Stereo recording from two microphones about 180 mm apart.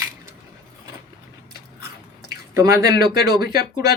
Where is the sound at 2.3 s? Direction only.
15° right (ahead or behind).